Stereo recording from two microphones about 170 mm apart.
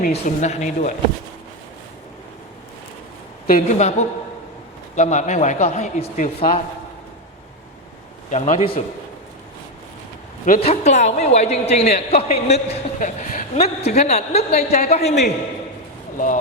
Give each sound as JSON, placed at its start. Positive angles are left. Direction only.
{"t": 0.0, "sound": "speech", "side_deg": 40}
{"t": 3.4, "sound": "a man's voice", "side_deg": 50}
{"t": 8.3, "sound": "a man's voice", "side_deg": 45}
{"t": 10.6, "sound": "a man's voice", "side_deg": 40}